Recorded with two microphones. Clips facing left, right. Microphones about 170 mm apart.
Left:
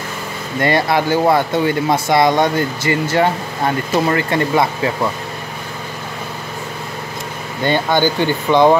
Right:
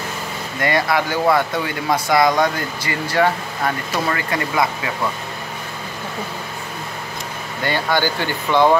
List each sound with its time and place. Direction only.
0.6 s speech: 30° left (ahead or behind)
7.6 s speech: 20° left (ahead or behind)